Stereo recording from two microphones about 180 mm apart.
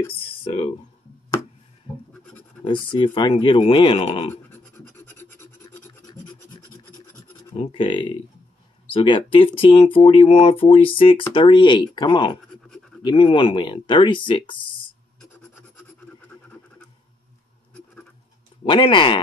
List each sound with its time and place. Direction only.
0.3 s a sound: 30° left (ahead or behind)
2.6 s speech: 25° left (ahead or behind)
4.3 s scratch: 10° left (ahead or behind)
7.5 s speech: 30° left (ahead or behind)
12.6 s scratch: centre (ahead or behind)
13.0 s speech: 30° left (ahead or behind)
15.5 s a sound: 10° left (ahead or behind)
18.6 s speech: 25° left (ahead or behind)